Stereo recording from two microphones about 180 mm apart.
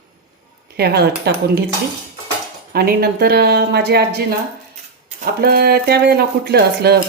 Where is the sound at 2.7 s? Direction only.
60° right (ahead or behind).